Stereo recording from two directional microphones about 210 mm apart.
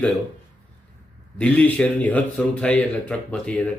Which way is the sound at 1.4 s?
5° left (ahead or behind).